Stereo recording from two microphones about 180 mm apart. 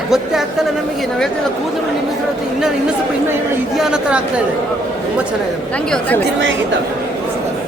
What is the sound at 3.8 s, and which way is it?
Speech, 5° right (ahead or behind).